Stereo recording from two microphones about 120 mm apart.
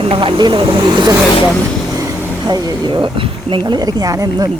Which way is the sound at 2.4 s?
35° right (ahead or behind).